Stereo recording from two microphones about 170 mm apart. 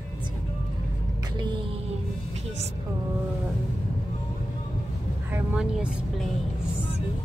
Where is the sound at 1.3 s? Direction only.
30° right (ahead or behind).